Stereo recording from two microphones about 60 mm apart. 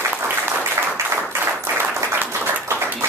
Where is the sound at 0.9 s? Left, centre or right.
Right.